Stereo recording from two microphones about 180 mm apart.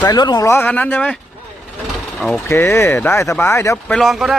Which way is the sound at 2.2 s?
5° left (ahead or behind).